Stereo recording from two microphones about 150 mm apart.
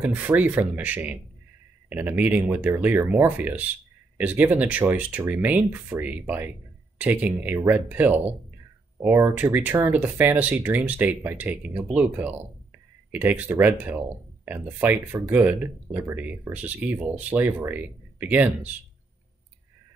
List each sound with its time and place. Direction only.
0.0 s speech: 10° right (ahead or behind)